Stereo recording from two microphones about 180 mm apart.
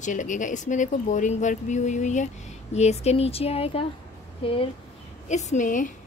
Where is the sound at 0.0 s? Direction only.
45° left (ahead or behind).